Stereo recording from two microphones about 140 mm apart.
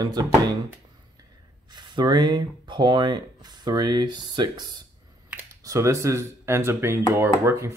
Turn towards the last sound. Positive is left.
turn(degrees=-20)  # may be behind; listen again after turning